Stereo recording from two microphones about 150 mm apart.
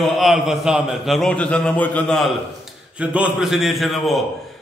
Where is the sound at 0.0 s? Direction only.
Centre (ahead or behind).